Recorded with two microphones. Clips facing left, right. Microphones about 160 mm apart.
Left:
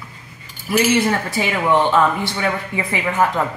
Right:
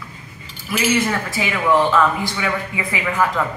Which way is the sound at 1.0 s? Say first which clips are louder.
Left 2 dB; 30° left (ahead or behind).